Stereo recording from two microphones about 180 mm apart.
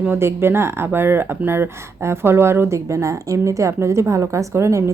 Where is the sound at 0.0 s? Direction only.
15° right (ahead or behind).